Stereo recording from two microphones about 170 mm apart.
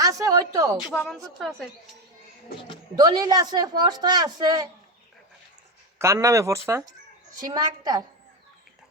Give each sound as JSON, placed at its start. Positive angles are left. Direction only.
{"t": 0.0, "sound": "a sound", "side_deg": -20}
{"t": 0.9, "sound": "speech", "side_deg": 5}
{"t": 2.9, "sound": "a woman's voice", "side_deg": -25}
{"t": 6.0, "sound": "a woman's voice", "side_deg": -15}